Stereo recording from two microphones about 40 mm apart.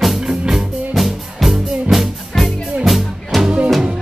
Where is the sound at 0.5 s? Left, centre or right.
Centre.